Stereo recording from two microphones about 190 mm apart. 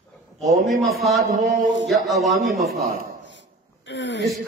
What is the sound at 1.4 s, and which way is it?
Speech, 45° right (ahead or behind).